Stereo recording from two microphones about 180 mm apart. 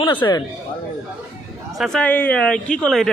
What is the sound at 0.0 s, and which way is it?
Speech, 25° left (ahead or behind).